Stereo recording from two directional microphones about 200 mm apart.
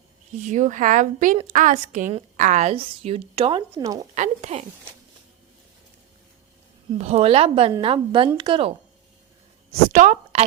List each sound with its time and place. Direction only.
0.3 s a woman's voice: 35° right (ahead or behind); by 4.0 s 20° right (ahead or behind)
4.1 s a woman's voice: 35° right (ahead or behind)
6.9 s a woman's voice: 30° right (ahead or behind)
9.9 s a woman's voice: 35° right (ahead or behind)